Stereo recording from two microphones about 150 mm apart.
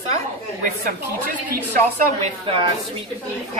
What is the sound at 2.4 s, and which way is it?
Speech, 35° right (ahead or behind).